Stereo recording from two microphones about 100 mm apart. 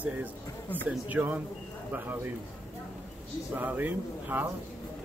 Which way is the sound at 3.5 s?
20° right (ahead or behind).